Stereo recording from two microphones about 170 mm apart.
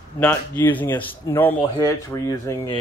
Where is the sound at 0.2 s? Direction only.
10° left (ahead or behind).